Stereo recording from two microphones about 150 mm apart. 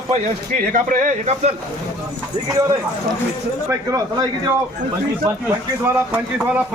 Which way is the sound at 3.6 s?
25° right (ahead or behind).